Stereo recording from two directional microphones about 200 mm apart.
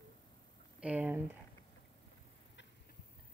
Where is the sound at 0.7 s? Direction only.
5° right (ahead or behind).